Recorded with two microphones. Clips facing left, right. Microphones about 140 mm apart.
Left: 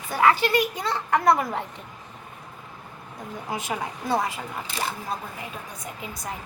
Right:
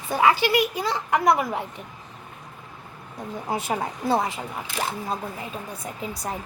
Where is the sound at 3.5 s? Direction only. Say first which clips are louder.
Right 3 dB; 30° right (ahead or behind).